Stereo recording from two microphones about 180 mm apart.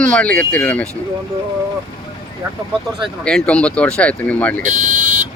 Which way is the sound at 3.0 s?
5° left (ahead or behind).